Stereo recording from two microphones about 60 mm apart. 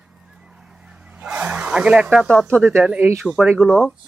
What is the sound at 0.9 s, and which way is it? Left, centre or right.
Vehicle, right.